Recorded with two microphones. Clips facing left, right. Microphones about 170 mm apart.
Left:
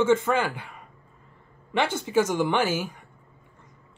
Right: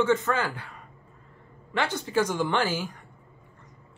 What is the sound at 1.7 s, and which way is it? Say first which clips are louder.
Speech: left 3 dB; 25° left (ahead or behind).